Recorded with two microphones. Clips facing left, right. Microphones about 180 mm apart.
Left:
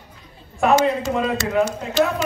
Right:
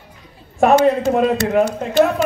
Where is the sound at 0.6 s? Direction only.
50° right (ahead or behind).